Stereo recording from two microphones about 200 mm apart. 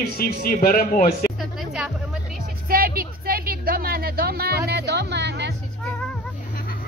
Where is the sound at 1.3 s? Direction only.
Centre (ahead or behind).